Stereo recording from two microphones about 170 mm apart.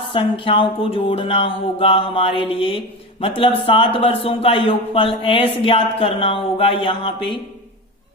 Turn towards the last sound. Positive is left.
turn(degrees=30)  # may be behind; listen again after turning